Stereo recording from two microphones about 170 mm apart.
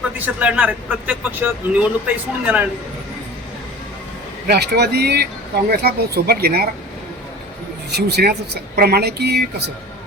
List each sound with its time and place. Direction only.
0.3 s a man's voice: 10° right (ahead or behind)
4.4 s speech: 70° right (ahead or behind)
7.9 s speech: 75° right (ahead or behind)